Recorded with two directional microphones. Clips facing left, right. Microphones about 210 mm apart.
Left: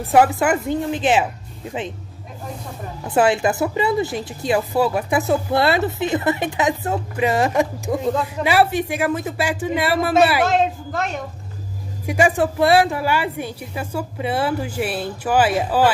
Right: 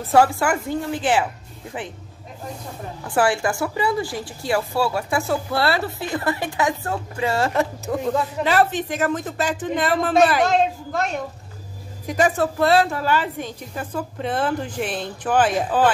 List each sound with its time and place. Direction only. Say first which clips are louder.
0.0 s a woman's voice: left 2 dB; 15° left (ahead or behind)
3.0 s a woman's voice: left 3 dB; 20° left (ahead or behind); by 11.2 s centre (ahead or behind)
12.1 s a woman's voice: left 2 dB; 10° left (ahead or behind)